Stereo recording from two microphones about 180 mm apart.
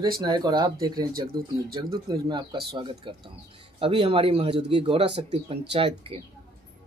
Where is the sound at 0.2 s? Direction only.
25° right (ahead or behind).